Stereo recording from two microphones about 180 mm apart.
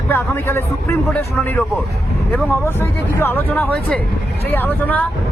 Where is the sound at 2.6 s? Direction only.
10° left (ahead or behind).